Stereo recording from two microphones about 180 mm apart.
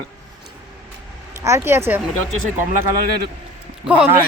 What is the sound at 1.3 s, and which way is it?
Speech, 15° right (ahead or behind).